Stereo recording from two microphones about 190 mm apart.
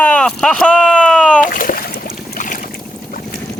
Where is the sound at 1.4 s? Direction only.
45° left (ahead or behind).